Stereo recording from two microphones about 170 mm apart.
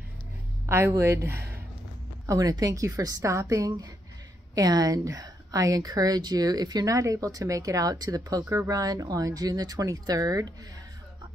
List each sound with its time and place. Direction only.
0.7 s a woman's voice: 15° right (ahead or behind)